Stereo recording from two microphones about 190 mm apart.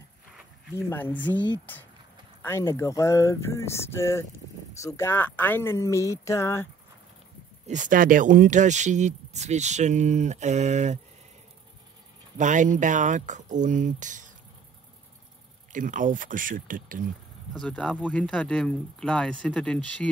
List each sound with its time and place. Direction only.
0.7 s speech: 10° left (ahead or behind)
7.6 s speech: 40° right (ahead or behind)
12.4 s speech: 40° right (ahead or behind)
15.7 s speech: 45° right (ahead or behind)
17.6 s speech: 5° left (ahead or behind)